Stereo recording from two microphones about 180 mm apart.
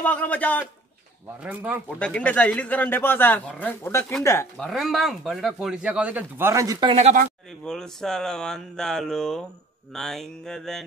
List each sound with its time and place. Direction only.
0.0 s speech: 10° left (ahead or behind)
1.4 s speech: 10° right (ahead or behind)
2.0 s speech: 5° left (ahead or behind)
4.6 s speech: centre (ahead or behind); by 7.0 s 20° right (ahead or behind)
7.0 s speech: 40° right (ahead or behind)
7.6 s speech: 5° left (ahead or behind)